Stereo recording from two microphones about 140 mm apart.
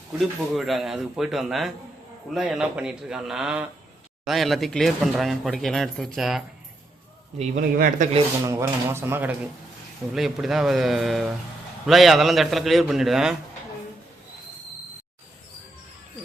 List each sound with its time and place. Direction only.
0.2 s speech: centre (ahead or behind)
7.5 s speech: 80° right
8.4 s speech: 20° right (ahead or behind)
10.2 s speech: centre (ahead or behind)